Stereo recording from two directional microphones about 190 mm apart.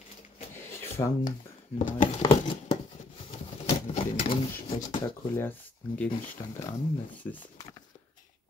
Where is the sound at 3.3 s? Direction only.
30° left (ahead or behind).